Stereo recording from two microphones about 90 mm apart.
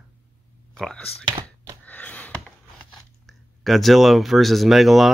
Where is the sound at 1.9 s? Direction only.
15° left (ahead or behind).